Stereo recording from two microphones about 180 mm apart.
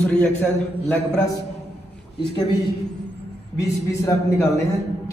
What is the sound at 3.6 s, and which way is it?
A man's voice, 15° left (ahead or behind).